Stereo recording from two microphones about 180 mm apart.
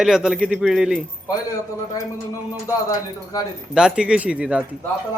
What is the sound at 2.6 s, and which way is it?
Speech, 20° left (ahead or behind).